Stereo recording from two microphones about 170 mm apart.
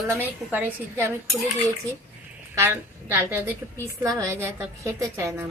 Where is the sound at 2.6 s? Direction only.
15° right (ahead or behind).